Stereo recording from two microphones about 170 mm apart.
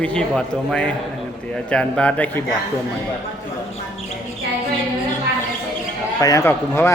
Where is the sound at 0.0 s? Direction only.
5° left (ahead or behind).